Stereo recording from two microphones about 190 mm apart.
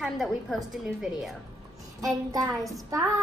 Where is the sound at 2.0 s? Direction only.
20° right (ahead or behind).